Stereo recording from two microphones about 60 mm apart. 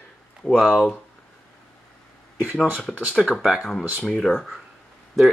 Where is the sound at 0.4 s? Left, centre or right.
Centre.